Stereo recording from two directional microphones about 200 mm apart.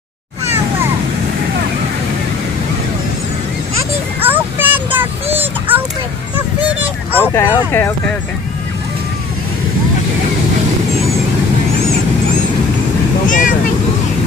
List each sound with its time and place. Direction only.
4.3 s a sound: 10° right (ahead or behind)
6.3 s dog: 10° right (ahead or behind)
7.3 s speech: 10° left (ahead or behind)
13.3 s vehicle: 40° left (ahead or behind)